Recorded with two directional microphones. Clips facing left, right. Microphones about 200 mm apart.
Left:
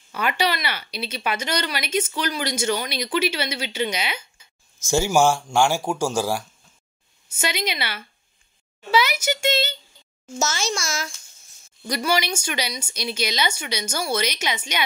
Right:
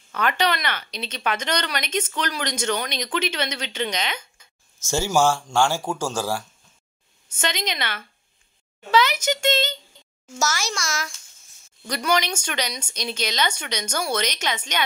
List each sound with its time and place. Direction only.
0.1 s speech: 10° left (ahead or behind)
10.4 s a child's voice: 25° left (ahead or behind)
11.9 s speech: 10° left (ahead or behind)